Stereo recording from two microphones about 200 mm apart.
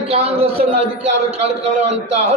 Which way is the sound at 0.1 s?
30° right (ahead or behind).